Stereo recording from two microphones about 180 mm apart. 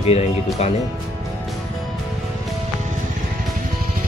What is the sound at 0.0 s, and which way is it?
Speech, 35° left (ahead or behind).